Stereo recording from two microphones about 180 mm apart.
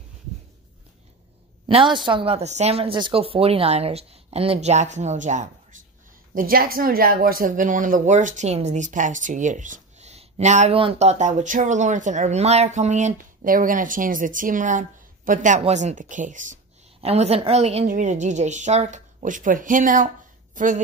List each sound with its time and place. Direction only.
1.7 s a woman's voice: 30° right (ahead or behind)
6.3 s speech: 55° right (ahead or behind)
17.0 s a woman's voice: 35° right (ahead or behind)